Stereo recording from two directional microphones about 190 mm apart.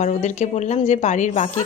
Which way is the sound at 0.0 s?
40° left (ahead or behind).